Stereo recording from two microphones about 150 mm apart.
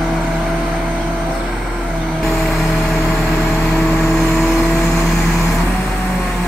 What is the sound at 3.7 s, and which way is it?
Vehicle, 5° left (ahead or behind).